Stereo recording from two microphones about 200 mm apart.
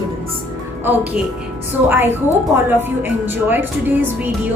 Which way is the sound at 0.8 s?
10° right (ahead or behind).